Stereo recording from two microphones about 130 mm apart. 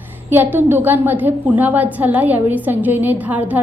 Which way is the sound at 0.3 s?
15° right (ahead or behind).